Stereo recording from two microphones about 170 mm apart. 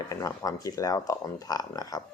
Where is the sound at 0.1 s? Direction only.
20° left (ahead or behind).